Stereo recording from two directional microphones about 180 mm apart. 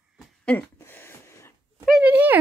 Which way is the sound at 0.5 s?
10° left (ahead or behind).